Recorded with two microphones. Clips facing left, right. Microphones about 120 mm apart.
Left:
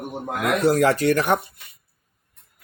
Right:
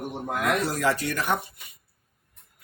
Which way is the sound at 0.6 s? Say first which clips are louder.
Left 8 dB; 65° left (ahead or behind).